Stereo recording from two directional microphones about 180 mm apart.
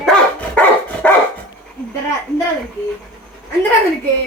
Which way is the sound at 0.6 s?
10° left (ahead or behind).